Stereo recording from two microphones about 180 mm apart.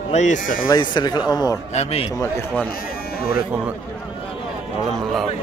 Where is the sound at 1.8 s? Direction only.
35° left (ahead or behind).